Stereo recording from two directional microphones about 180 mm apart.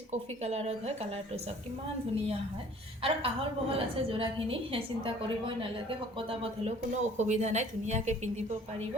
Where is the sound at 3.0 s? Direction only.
30° right (ahead or behind).